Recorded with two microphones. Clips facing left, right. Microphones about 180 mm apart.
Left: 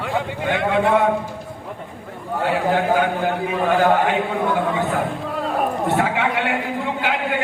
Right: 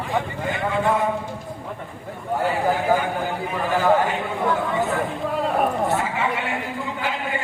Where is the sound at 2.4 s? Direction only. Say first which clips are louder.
Left 3 dB; 70° left (ahead or behind).